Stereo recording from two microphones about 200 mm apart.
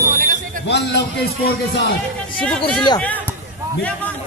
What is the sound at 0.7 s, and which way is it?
Speech, 55° left (ahead or behind).